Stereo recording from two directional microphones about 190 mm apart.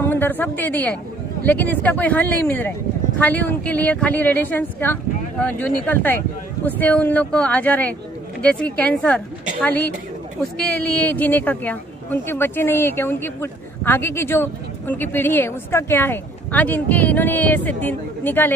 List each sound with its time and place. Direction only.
0.0 s a woman's voice: 10° left (ahead or behind)